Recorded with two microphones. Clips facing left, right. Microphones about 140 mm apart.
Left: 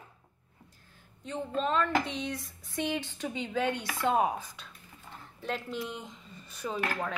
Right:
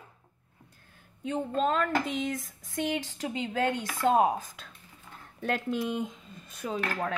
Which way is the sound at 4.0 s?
45° right (ahead or behind).